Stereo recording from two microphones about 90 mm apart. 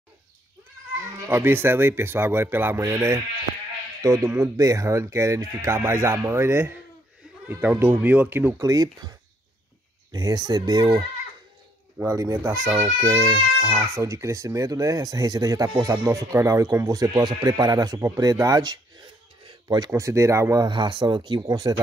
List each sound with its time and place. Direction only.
1.2 s speech: 25° right (ahead or behind)
8.5 s speech: 40° right (ahead or behind)
10.1 s speech: 45° right (ahead or behind)
12.1 s speech: 35° right (ahead or behind)
19.4 s a sound: 55° right (ahead or behind)
19.9 s speech: 30° right (ahead or behind)
20.6 s speech: 60° right (ahead or behind)
21.5 s speech: 45° right (ahead or behind)